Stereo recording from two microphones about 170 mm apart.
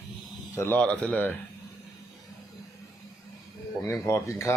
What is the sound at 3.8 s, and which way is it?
Speech, 15° left (ahead or behind).